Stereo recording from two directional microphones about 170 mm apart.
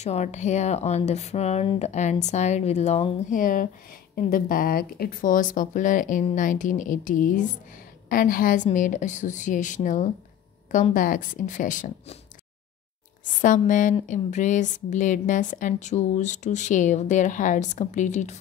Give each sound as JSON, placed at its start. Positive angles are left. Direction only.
{"t": 0.0, "sound": "speech", "side_deg": 40}
{"t": 3.3, "sound": "a woman's voice", "side_deg": 55}
{"t": 13.2, "sound": "a woman's voice", "side_deg": 50}